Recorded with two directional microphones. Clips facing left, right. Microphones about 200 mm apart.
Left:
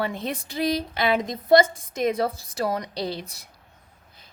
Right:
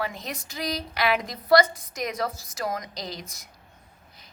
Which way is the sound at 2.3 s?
60° left (ahead or behind).